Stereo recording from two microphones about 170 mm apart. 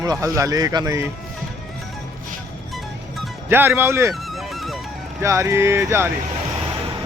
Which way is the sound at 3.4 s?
10° right (ahead or behind).